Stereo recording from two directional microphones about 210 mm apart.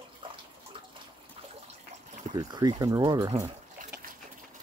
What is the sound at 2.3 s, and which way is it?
Speech, 20° right (ahead or behind).